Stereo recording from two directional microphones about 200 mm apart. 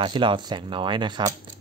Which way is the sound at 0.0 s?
25° right (ahead or behind).